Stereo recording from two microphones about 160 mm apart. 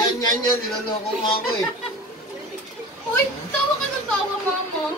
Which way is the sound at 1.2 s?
30° left (ahead or behind).